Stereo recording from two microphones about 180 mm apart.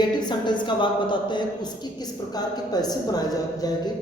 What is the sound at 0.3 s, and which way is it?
A man's voice, 25° left (ahead or behind).